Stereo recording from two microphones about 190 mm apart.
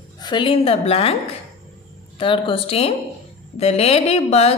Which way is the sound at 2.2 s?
25° left (ahead or behind).